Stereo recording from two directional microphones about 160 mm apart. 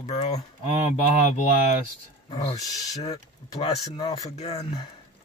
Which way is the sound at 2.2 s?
30° left (ahead or behind).